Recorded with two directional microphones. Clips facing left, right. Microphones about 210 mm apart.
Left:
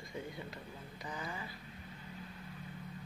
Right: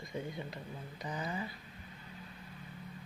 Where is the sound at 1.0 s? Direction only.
20° right (ahead or behind).